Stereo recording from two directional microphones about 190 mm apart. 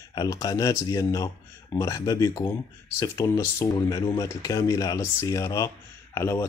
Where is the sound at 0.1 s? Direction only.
20° left (ahead or behind).